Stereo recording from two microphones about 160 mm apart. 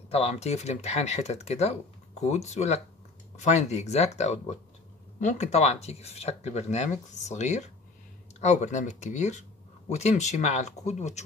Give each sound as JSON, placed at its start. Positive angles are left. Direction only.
{"t": 0.1, "sound": "speech", "side_deg": 40}